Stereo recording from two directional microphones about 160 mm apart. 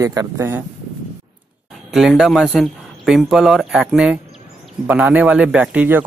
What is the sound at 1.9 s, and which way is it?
Speech, centre (ahead or behind).